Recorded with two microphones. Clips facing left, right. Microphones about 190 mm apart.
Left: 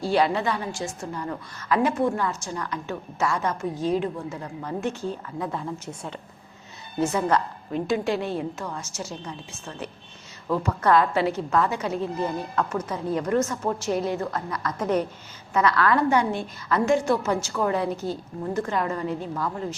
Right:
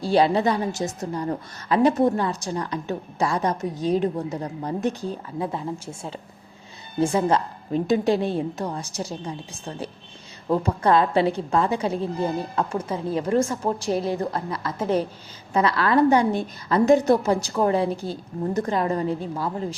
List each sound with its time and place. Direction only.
0.0 s a woman's voice: 35° right (ahead or behind)
5.0 s a woman's voice: 25° right (ahead or behind)